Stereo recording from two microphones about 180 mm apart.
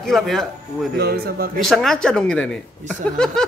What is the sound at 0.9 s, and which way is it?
Speech, 60° right (ahead or behind).